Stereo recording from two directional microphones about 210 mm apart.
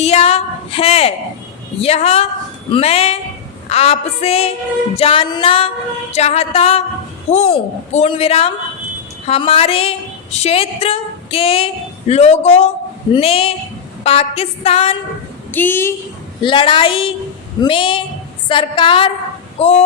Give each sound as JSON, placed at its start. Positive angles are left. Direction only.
{"t": 0.0, "sound": "a woman's voice", "side_deg": 30}
{"t": 15.5, "sound": "a woman's voice", "side_deg": 10}
{"t": 16.4, "sound": "a woman's voice", "side_deg": 25}